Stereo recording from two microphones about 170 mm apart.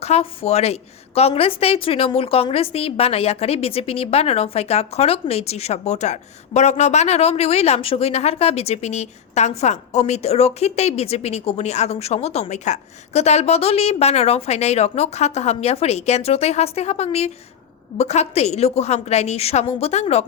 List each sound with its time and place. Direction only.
0.0 s a woman's voice: 35° left (ahead or behind)